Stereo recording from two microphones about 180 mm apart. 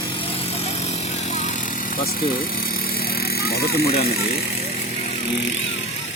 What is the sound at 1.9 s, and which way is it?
Speech, 55° left (ahead or behind).